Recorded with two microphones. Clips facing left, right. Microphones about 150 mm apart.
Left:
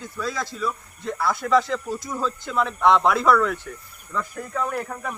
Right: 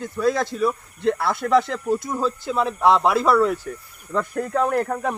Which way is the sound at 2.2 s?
30° right (ahead or behind).